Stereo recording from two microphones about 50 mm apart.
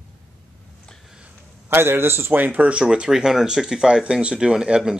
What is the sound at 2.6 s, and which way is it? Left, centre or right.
Speech, right.